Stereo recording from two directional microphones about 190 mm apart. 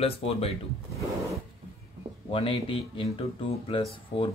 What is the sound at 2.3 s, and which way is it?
Speech, 25° left (ahead or behind).